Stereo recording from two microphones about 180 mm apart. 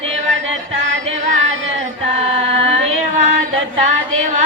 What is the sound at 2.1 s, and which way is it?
Music, 35° right (ahead or behind).